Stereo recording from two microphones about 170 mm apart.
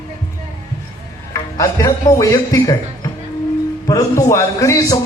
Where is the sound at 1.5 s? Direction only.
20° left (ahead or behind).